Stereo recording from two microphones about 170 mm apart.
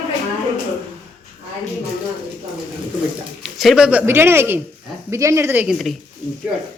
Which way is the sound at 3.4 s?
Centre (ahead or behind).